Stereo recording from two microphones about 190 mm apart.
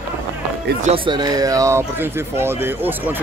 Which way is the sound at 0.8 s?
30° right (ahead or behind).